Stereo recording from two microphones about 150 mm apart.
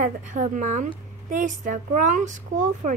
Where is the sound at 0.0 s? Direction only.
55° right (ahead or behind).